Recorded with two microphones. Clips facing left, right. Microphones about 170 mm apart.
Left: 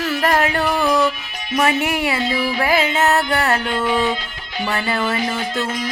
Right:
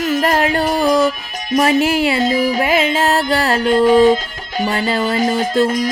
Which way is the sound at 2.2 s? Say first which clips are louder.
Right 5 dB; 45° right (ahead or behind).